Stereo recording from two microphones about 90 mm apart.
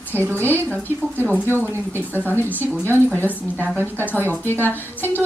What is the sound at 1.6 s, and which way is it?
Speech, 25° right (ahead or behind).